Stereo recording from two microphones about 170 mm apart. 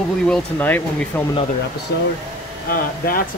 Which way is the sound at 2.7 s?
60° left (ahead or behind).